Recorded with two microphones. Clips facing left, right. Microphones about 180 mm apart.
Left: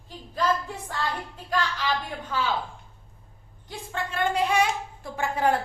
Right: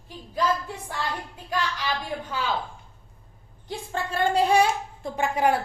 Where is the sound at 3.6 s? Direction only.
35° right (ahead or behind).